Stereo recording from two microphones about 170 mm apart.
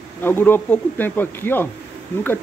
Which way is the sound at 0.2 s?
10° left (ahead or behind).